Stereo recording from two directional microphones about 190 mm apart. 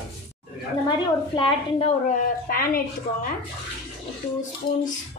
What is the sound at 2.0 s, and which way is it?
Dishes, 50° left (ahead or behind).